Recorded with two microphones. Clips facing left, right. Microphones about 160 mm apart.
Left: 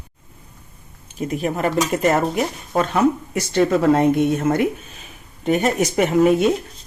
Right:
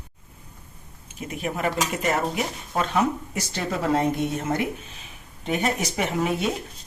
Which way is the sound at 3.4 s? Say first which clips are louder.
Left 12 dB; 60° left (ahead or behind).